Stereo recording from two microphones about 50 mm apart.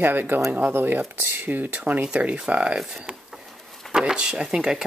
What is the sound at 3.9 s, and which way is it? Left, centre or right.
Speech, centre.